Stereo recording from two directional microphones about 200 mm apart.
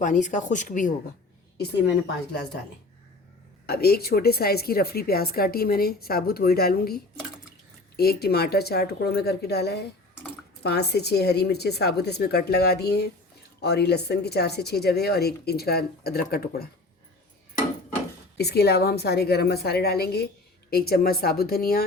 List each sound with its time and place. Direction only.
0.0 s speech: 40° left (ahead or behind)
3.7 s a woman's voice: 50° left (ahead or behind)
18.3 s a woman's voice: 55° left (ahead or behind)